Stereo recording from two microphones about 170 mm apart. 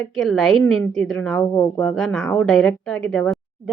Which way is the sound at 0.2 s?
Centre (ahead or behind).